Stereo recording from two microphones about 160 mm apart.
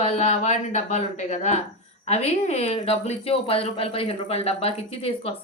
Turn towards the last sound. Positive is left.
turn(degrees=40)  # may be behind; listen again after turning